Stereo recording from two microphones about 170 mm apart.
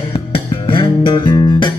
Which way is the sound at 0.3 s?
30° left (ahead or behind).